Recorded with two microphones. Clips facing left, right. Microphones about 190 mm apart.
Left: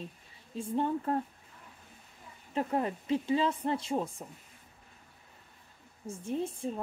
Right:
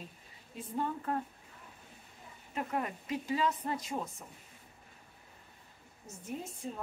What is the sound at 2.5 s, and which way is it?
A woman's voice, 30° left (ahead or behind).